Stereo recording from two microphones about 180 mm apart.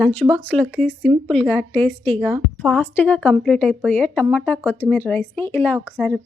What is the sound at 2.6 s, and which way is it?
A woman's voice, 10° left (ahead or behind).